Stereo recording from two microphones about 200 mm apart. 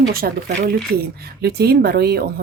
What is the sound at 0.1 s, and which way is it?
Speech, 50° right (ahead or behind).